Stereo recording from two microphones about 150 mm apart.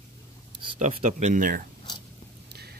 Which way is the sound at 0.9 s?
50° right (ahead or behind).